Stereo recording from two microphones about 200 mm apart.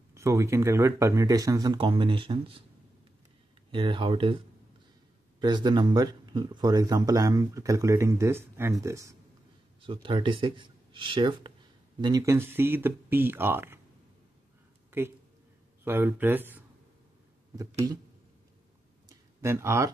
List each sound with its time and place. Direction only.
0.1 s speech: 15° right (ahead or behind)
3.7 s speech: 25° right (ahead or behind)
5.4 s speech: 20° right (ahead or behind)
9.8 s speech: 25° right (ahead or behind); by 13.7 s 10° right (ahead or behind)
14.9 s speech: 10° right (ahead or behind)
19.0 s a sound: 15° right (ahead or behind)